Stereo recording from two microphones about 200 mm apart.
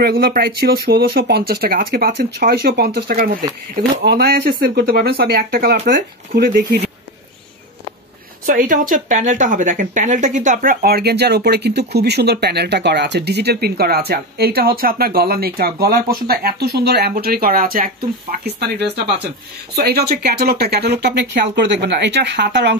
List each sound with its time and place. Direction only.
0.0 s speech: 50° right (ahead or behind)
8.5 s speech: 40° right (ahead or behind); by 22.8 s 60° right (ahead or behind)